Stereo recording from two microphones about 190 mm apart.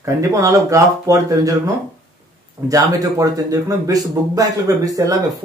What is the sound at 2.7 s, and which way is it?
A man's voice, 20° right (ahead or behind).